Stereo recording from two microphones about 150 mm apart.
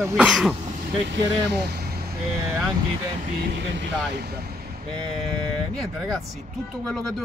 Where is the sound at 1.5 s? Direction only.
90° right.